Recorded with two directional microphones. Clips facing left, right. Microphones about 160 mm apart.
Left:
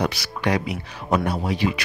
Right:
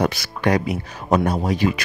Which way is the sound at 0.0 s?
50° right (ahead or behind).